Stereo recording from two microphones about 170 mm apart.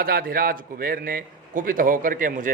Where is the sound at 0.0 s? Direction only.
60° right (ahead or behind).